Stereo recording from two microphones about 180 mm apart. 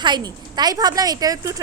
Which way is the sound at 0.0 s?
25° right (ahead or behind).